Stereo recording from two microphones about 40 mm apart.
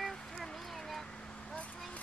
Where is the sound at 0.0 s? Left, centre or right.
Centre.